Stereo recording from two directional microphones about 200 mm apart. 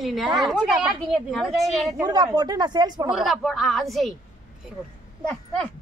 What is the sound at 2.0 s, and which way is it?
Speech, 20° right (ahead or behind).